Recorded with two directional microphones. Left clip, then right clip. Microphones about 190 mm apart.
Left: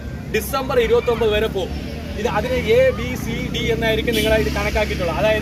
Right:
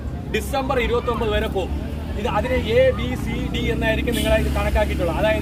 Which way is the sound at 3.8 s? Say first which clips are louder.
Left 3 dB; 10° right (ahead or behind).